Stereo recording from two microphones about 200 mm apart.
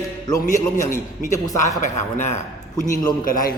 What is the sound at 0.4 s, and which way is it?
A man's voice, 40° left (ahead or behind).